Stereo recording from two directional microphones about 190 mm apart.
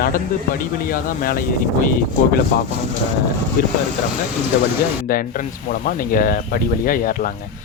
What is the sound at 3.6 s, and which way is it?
Speech, 50° left (ahead or behind).